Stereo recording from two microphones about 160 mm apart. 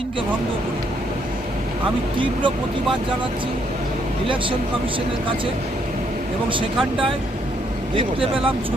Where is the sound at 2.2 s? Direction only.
30° right (ahead or behind).